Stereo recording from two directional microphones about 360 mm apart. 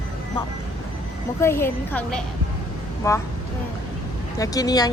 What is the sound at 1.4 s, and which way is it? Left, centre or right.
A woman's voice, centre.